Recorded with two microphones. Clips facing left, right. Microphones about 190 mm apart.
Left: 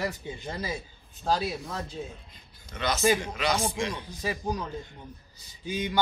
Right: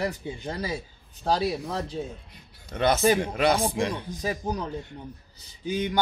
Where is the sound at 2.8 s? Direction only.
55° right (ahead or behind).